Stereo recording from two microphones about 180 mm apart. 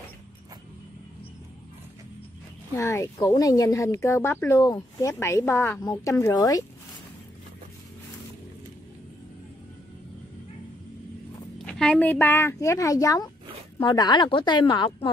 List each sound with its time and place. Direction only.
2.7 s speech: 15° left (ahead or behind)
11.5 s a woman's voice: 5° left (ahead or behind); by 15.0 s 25° left (ahead or behind)